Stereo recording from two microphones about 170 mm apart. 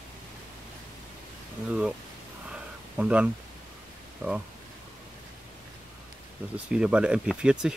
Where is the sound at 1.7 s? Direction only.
5° right (ahead or behind).